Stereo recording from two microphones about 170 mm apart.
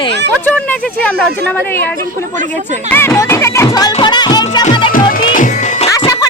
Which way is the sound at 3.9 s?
25° left (ahead or behind).